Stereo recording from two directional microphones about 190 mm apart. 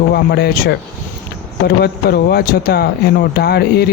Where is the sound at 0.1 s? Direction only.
60° left (ahead or behind).